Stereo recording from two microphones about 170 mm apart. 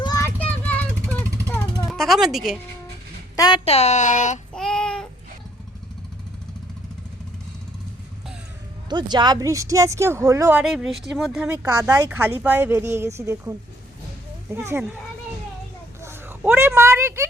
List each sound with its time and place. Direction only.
0.0 s child singing: 20° left (ahead or behind)
1.9 s speech: centre (ahead or behind)
3.3 s speech: 25° left (ahead or behind)
3.7 s speech: 40° left (ahead or behind)
4.5 s child singing: 5° left (ahead or behind)
8.9 s speech: 25° right (ahead or behind)
10.6 s speech: 5° right (ahead or behind)
11.4 s speech: 20° right (ahead or behind)
16.0 s speech: 15° right (ahead or behind)